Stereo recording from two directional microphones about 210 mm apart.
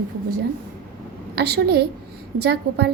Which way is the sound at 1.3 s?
50° right (ahead or behind).